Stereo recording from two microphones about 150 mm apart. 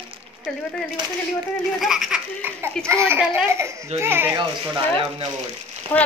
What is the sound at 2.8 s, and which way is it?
A woman's voice, 15° right (ahead or behind).